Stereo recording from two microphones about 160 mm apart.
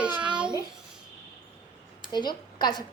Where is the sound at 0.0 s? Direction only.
5° right (ahead or behind).